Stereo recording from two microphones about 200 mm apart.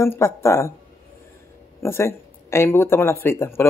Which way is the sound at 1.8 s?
15° left (ahead or behind).